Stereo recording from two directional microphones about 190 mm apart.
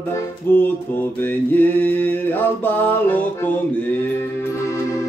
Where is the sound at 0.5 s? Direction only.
10° left (ahead or behind).